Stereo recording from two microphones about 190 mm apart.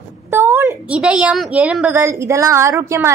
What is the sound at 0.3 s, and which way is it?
A woman's voice, 10° right (ahead or behind).